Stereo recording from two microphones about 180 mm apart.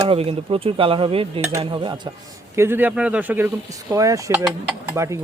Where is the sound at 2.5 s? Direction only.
15° right (ahead or behind).